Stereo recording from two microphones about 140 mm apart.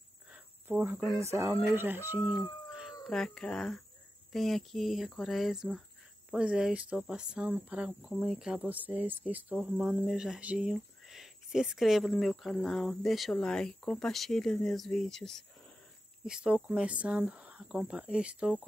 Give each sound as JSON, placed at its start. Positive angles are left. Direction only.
{"t": 0.3, "sound": "a sound", "side_deg": -5}
{"t": 1.2, "sound": "speech", "side_deg": -20}
{"t": 16.3, "sound": "speech", "side_deg": -5}